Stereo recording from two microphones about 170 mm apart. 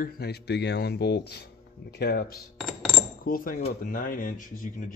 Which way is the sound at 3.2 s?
55° left (ahead or behind).